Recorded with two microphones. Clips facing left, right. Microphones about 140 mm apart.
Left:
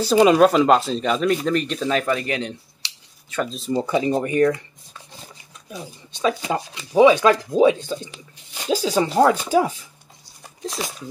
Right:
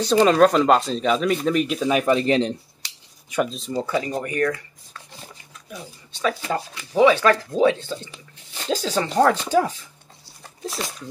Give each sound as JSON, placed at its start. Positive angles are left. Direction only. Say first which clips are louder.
{"t": 0.0, "sound": "speech", "louder": "left 1 dB", "side_deg": 10}
{"t": 2.1, "sound": "speech", "louder": "right 6 dB", "side_deg": -30}
{"t": 2.8, "sound": "a sound", "louder": "left 1 dB", "side_deg": -45}
{"t": 3.4, "sound": "speech", "louder": "left 3 dB", "side_deg": 0}
{"t": 3.7, "sound": "speech", "louder": "left 4 dB", "side_deg": 20}